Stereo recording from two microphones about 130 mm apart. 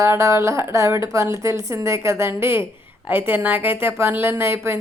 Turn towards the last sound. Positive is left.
turn(degrees=-20)  # may be behind; listen again after turning